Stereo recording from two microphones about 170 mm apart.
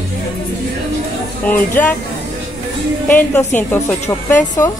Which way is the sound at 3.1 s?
10° left (ahead or behind).